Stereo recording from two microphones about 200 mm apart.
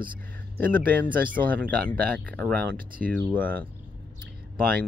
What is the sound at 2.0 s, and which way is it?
Speech, 5° left (ahead or behind).